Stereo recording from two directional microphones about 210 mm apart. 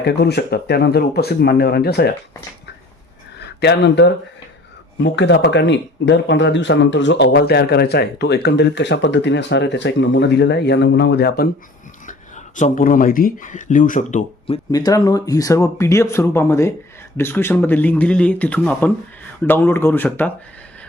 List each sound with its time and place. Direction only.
0.0 s speech: 50° left (ahead or behind)
3.6 s speech: 55° left (ahead or behind)
12.0 s speech: 35° left (ahead or behind)
14.7 s speech: 15° left (ahead or behind)